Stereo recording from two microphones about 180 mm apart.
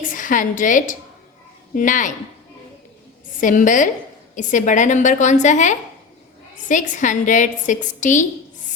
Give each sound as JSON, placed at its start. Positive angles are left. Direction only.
{"t": 0.0, "sound": "a woman's voice", "side_deg": 45}
{"t": 3.4, "sound": "a woman's voice", "side_deg": 45}